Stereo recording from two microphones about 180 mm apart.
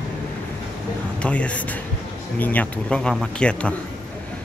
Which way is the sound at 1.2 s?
5° left (ahead or behind).